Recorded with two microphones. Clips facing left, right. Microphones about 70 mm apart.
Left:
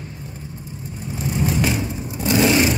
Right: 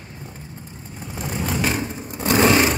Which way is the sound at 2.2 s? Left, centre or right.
Right.